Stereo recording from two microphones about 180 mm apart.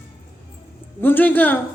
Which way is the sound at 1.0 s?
10° left (ahead or behind).